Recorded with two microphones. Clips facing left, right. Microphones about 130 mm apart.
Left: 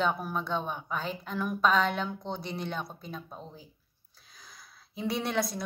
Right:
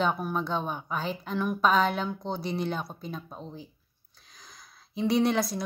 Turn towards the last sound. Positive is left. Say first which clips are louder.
# right 5 dB
turn(degrees=0)  # may be behind; listen again after turning